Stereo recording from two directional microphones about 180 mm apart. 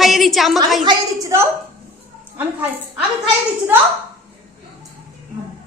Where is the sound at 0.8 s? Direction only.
25° right (ahead or behind).